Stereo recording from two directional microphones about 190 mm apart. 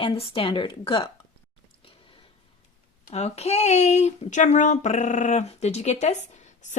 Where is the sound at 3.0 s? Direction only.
35° left (ahead or behind).